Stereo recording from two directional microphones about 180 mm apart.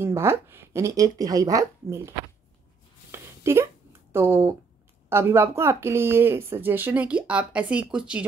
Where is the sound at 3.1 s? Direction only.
15° right (ahead or behind).